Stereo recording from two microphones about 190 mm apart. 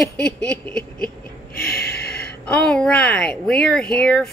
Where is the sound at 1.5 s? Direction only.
55° left (ahead or behind).